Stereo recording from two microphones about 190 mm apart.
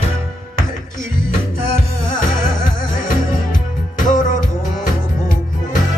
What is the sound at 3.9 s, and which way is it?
Music, 45° left (ahead or behind).